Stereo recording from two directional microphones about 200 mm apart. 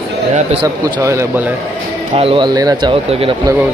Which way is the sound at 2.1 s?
25° right (ahead or behind).